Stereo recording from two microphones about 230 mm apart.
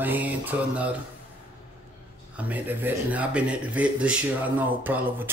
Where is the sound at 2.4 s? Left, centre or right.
Centre.